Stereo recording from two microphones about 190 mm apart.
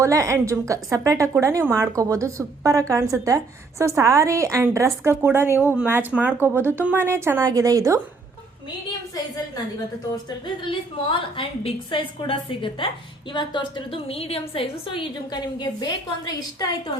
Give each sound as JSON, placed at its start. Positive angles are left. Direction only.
{"t": 0.0, "sound": "a woman's voice", "side_deg": -15}
{"t": 10.2, "sound": "a woman's voice", "side_deg": 25}